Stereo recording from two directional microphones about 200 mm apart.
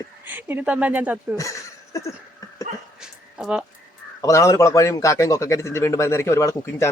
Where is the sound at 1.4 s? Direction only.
15° left (ahead or behind).